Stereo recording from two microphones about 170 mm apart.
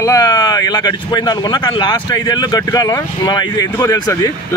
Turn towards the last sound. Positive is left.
turn(degrees=20)  # may be behind; listen again after turning